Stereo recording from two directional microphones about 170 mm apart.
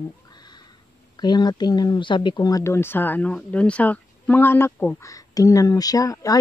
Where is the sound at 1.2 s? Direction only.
25° left (ahead or behind).